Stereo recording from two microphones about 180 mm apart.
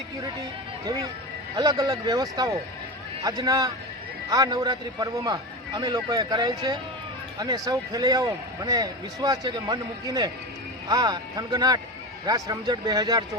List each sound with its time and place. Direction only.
1.5 s speech: 20° right (ahead or behind)